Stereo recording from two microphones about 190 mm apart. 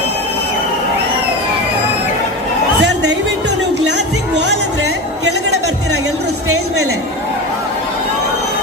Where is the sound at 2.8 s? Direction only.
65° right (ahead or behind).